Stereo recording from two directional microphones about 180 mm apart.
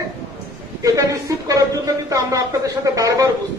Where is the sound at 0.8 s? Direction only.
20° right (ahead or behind).